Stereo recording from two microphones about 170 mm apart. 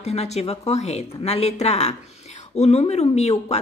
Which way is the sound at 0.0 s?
40° left (ahead or behind).